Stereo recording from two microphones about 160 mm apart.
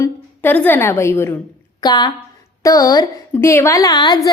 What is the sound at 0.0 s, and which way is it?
A woman's voice, 10° left (ahead or behind).